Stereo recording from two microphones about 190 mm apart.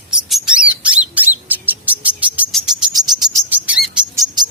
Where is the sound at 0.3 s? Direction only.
Centre (ahead or behind).